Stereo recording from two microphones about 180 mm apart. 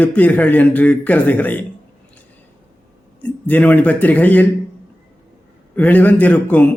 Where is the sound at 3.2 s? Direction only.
10° left (ahead or behind).